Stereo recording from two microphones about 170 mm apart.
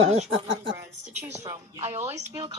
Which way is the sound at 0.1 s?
35° right (ahead or behind).